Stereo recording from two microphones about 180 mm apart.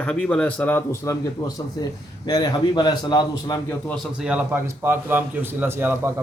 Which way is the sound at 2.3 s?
25° left (ahead or behind).